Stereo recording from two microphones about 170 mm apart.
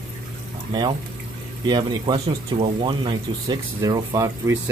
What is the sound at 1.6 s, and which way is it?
Speech, 25° right (ahead or behind).